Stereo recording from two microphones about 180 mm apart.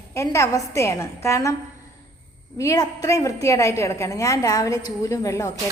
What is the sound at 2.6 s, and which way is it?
A woman's voice, 20° left (ahead or behind).